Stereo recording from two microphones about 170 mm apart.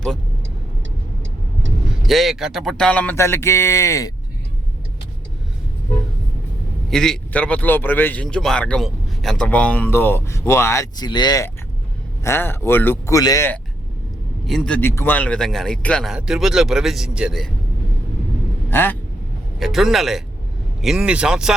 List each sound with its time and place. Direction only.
2.0 s speech: centre (ahead or behind); by 4.1 s 15° left (ahead or behind)
6.9 s speech: 5° left (ahead or behind)
14.4 s speech: centre (ahead or behind)
18.7 s speech: 10° left (ahead or behind)
19.5 s speech: centre (ahead or behind)